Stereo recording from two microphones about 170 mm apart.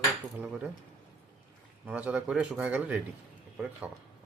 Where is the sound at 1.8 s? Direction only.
5° right (ahead or behind).